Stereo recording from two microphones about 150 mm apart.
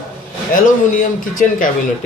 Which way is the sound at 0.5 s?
65° left (ahead or behind).